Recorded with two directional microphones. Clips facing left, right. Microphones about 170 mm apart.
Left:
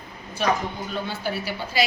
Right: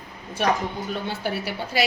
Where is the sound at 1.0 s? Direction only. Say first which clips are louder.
Right 1 dB; 65° right (ahead or behind).